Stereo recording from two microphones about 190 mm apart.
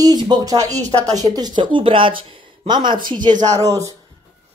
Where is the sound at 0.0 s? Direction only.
20° right (ahead or behind).